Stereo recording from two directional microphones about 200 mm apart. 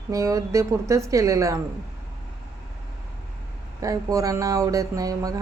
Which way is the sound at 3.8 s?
15° right (ahead or behind).